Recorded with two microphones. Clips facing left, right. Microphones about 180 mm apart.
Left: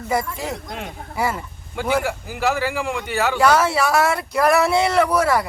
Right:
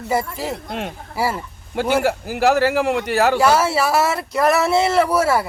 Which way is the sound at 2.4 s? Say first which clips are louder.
Right 6 dB; 40° right (ahead or behind).